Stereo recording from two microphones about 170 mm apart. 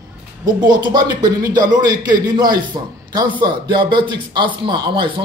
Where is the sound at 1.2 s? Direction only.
20° right (ahead or behind).